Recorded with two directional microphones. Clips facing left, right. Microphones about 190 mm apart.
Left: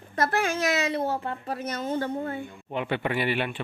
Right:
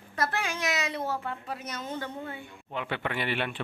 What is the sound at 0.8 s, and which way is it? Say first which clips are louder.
A woman's voice: left 5 dB; 30° left (ahead or behind).